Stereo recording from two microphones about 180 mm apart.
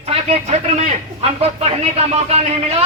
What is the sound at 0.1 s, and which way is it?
A man's voice, 35° right (ahead or behind).